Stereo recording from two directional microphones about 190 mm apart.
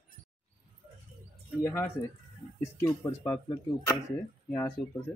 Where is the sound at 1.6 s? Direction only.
15° left (ahead or behind).